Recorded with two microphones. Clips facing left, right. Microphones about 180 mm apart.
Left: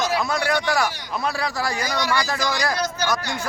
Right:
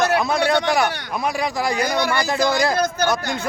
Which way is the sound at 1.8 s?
55° right (ahead or behind).